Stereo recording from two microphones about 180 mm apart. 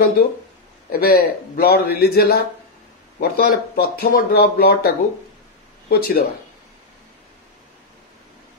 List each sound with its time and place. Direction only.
0.9 s speech: 55° left (ahead or behind)